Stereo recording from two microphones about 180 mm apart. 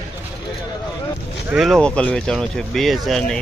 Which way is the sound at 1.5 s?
Centre (ahead or behind).